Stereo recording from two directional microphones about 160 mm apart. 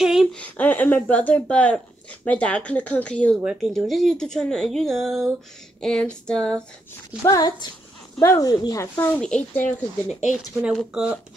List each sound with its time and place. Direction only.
0.0 s speech: centre (ahead or behind)
7.2 s speech: 20° left (ahead or behind)
10.6 s speech: 5° right (ahead or behind)